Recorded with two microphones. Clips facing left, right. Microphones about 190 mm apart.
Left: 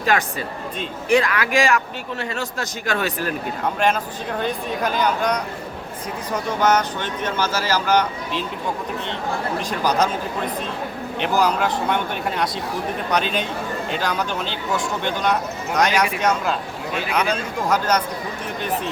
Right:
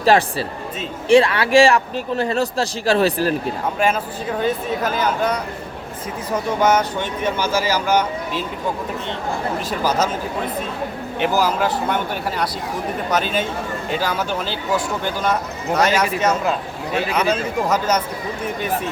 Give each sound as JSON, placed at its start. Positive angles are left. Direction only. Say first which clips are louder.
{"t": 0.0, "sound": "speech", "louder": "right 5 dB", "side_deg": -30}
{"t": 3.8, "sound": "speech", "louder": "right 1 dB", "side_deg": -5}
{"t": 11.2, "sound": "speech", "louder": "right 1 dB", "side_deg": -5}
{"t": 14.0, "sound": "speech", "louder": "right 2 dB", "side_deg": -5}
{"t": 17.2, "sound": "speech", "louder": "right 2 dB", "side_deg": -5}